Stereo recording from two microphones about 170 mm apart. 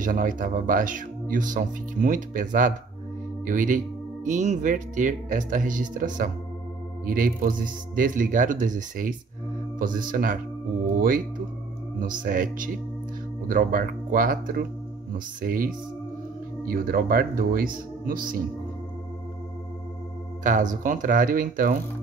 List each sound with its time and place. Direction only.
0.0 s speech: 50° right (ahead or behind)
20.4 s speech: 50° right (ahead or behind)